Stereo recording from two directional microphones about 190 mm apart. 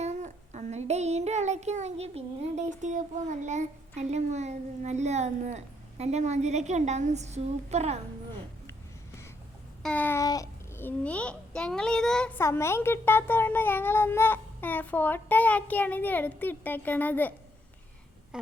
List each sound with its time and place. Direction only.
0.0 s child singing: 35° right (ahead or behind)
9.8 s a child's voice: 10° left (ahead or behind)